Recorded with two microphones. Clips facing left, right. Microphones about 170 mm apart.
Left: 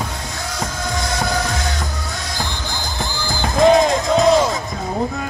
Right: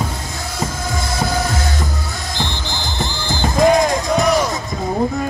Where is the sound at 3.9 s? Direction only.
25° left (ahead or behind).